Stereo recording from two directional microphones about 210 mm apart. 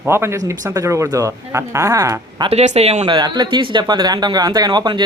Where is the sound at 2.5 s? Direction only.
30° right (ahead or behind).